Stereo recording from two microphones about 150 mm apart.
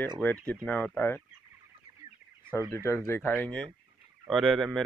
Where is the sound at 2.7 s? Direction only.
20° left (ahead or behind).